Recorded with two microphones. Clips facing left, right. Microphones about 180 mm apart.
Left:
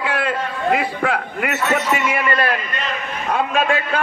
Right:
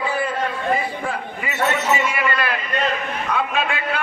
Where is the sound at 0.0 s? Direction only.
75° left (ahead or behind).